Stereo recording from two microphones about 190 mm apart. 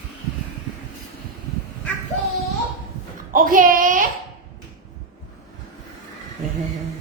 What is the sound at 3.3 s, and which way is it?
Speech, 45° right (ahead or behind).